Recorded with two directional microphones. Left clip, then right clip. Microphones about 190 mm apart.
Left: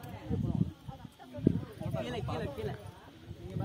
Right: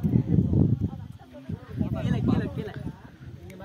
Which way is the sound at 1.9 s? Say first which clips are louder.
Right 7 dB; 30° right (ahead or behind).